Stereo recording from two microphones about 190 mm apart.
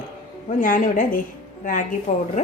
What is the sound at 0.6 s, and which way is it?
A woman's voice, 45° left (ahead or behind).